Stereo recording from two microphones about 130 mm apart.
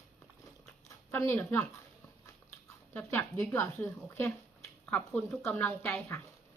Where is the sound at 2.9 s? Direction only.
15° left (ahead or behind).